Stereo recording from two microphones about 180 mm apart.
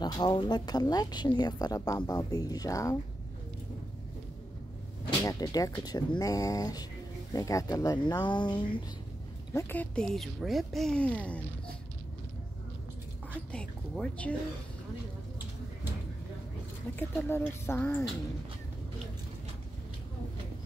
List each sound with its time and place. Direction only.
0.0 s a woman's voice: 25° left (ahead or behind)
5.2 s a woman's voice: 20° left (ahead or behind)
9.5 s speech: 15° left (ahead or behind)
13.5 s speech: 5° left (ahead or behind)
17.3 s speech: 10° left (ahead or behind)